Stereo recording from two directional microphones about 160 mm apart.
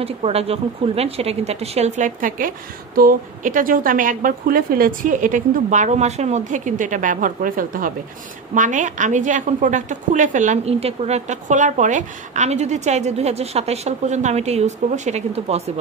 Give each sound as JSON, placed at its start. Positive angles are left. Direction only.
{"t": 0.0, "sound": "a woman's voice", "side_deg": -40}